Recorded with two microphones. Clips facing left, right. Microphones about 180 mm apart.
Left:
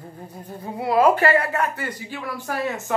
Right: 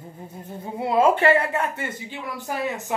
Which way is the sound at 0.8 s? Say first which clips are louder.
Left 1 dB; 25° right (ahead or behind).